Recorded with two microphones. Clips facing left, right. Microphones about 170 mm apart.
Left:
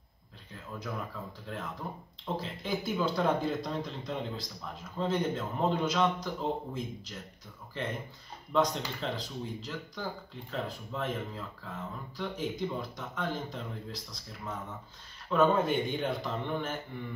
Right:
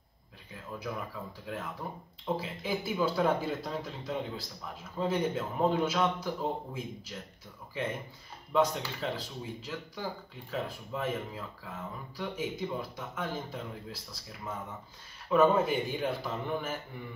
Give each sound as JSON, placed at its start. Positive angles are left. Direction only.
{"t": 1.5, "sound": "speech", "side_deg": -10}
{"t": 15.2, "sound": "speech", "side_deg": -10}